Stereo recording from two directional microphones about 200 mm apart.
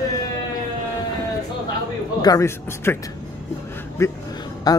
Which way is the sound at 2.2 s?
15° left (ahead or behind).